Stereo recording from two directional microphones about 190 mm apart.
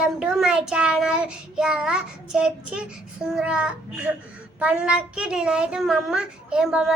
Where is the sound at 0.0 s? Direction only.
5° right (ahead or behind).